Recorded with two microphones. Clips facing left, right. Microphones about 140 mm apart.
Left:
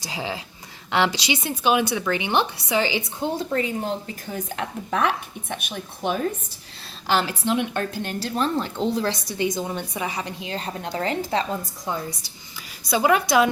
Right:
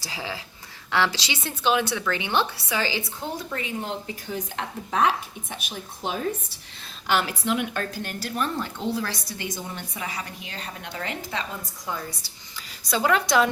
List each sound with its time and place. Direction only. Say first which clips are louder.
0.0 s a woman's voice: left 4 dB; 20° left (ahead or behind)
3.5 s speech: left 6 dB; 40° left (ahead or behind); by 6.1 s 55° left (ahead or behind)
7.1 s a woman's voice: left 2 dB; 30° left (ahead or behind)
12.9 s a woman's voice: left 3 dB; 10° left (ahead or behind)